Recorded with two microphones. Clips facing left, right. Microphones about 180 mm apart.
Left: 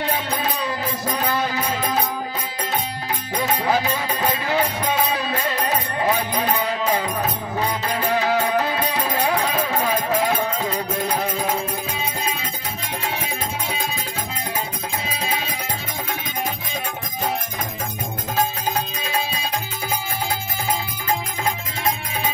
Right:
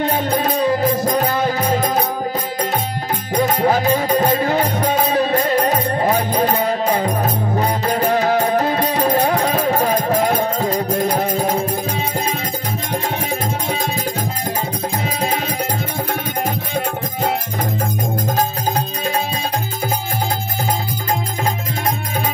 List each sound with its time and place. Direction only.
0.0 s music: 45° right (ahead or behind)
3.3 s music: 45° right (ahead or behind)